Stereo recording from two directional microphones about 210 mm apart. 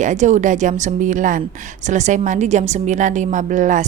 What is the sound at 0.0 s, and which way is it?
A woman's voice, 35° right (ahead or behind).